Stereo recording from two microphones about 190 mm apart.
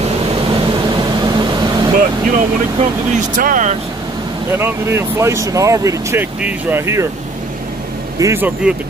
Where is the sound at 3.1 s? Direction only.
40° right (ahead or behind).